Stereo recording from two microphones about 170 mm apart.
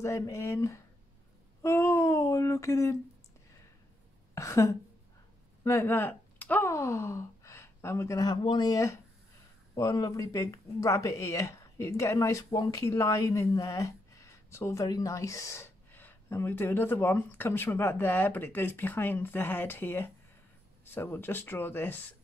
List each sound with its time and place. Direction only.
0.0 s speech: 15° left (ahead or behind)
1.6 s a sound: 15° left (ahead or behind)
4.4 s speech: 15° left (ahead or behind)